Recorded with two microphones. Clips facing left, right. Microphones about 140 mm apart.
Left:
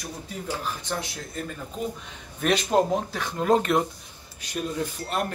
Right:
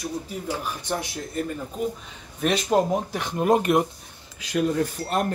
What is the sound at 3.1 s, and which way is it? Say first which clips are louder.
Speech: right 3 dB; 20° right (ahead or behind).